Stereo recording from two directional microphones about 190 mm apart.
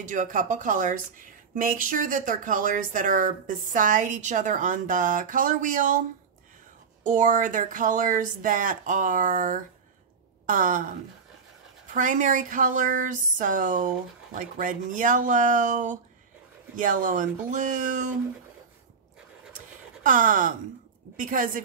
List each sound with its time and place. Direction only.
0.0 s speech: 40° right (ahead or behind)
11.9 s speech: 45° right (ahead or behind)
20.0 s speech: 45° right (ahead or behind)